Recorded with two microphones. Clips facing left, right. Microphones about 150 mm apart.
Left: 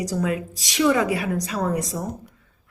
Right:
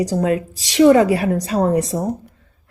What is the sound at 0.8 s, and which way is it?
A woman's voice, 45° right (ahead or behind).